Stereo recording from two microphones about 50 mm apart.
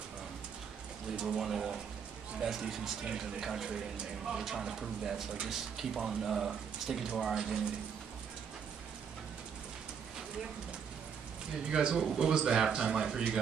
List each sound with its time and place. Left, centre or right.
1.1 s a man's voice: centre
11.7 s a man's voice: centre